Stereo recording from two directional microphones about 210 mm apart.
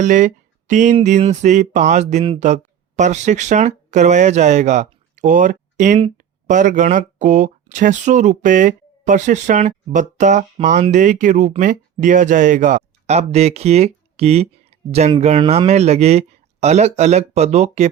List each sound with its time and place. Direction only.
0.0 s speech: 35° right (ahead or behind)